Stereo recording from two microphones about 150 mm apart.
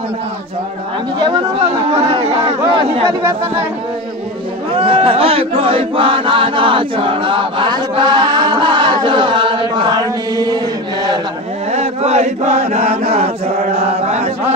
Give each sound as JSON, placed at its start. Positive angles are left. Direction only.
{"t": 1.9, "sound": "chatter", "side_deg": -40}
{"t": 3.1, "sound": "speech", "side_deg": -20}
{"t": 4.7, "sound": "chant", "side_deg": -35}
{"t": 11.7, "sound": "chant", "side_deg": -45}
{"t": 13.1, "sound": "speech", "side_deg": -45}